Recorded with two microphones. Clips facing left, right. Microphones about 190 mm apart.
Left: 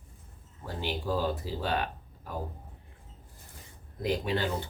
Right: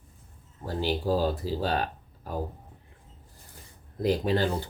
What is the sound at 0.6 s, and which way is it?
Speech, 40° right (ahead or behind).